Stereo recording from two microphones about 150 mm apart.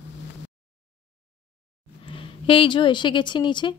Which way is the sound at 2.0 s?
35° left (ahead or behind).